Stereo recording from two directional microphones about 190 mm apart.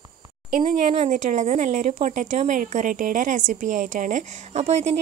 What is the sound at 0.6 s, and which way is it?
Speech, 40° right (ahead or behind).